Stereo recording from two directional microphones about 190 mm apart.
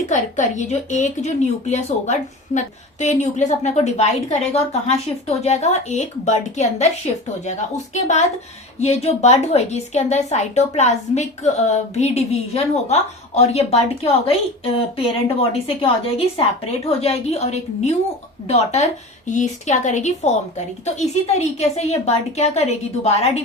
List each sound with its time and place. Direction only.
0.1 s a woman's voice: 40° left (ahead or behind)
8.8 s a woman's voice: 35° left (ahead or behind)